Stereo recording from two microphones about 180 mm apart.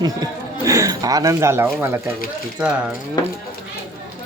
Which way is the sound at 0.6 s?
15° right (ahead or behind).